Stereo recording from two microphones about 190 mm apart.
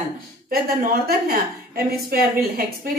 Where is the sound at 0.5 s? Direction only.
50° right (ahead or behind).